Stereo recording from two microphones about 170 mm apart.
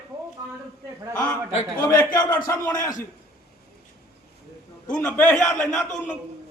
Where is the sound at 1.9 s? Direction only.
20° left (ahead or behind).